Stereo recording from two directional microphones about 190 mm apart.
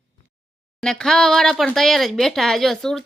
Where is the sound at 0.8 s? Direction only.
5° left (ahead or behind).